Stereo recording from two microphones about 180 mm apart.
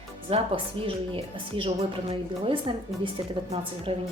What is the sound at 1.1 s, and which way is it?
A woman's voice, 30° right (ahead or behind).